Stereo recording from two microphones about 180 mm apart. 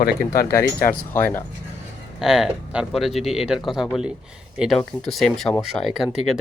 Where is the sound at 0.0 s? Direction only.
55° left (ahead or behind).